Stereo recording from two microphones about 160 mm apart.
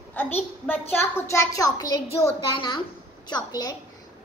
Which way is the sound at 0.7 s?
15° left (ahead or behind).